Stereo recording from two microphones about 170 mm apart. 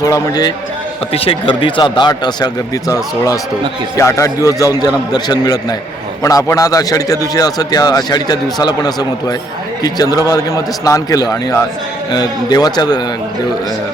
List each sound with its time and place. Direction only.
0.0 s a man's voice: 20° left (ahead or behind)
1.1 s a man's voice: 35° left (ahead or behind)